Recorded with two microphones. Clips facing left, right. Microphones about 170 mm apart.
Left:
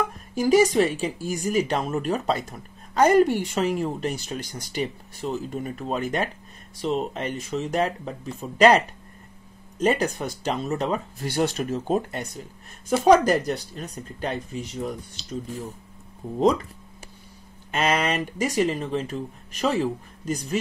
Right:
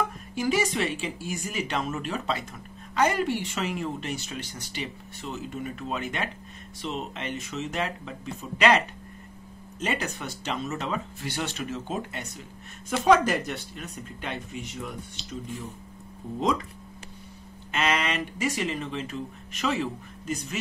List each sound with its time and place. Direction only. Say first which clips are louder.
0.3 s speech: left 9 dB; 40° left (ahead or behind)
17.6 s speech: left 4 dB; 40° left (ahead or behind)